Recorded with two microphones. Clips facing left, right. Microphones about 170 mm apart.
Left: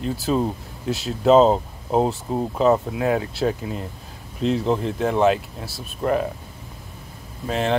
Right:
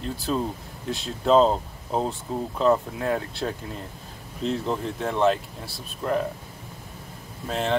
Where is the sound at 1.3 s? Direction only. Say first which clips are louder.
Left 4 dB; 15° left (ahead or behind).